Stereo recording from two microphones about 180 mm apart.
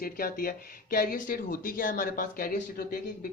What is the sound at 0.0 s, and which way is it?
Speech, 55° left (ahead or behind).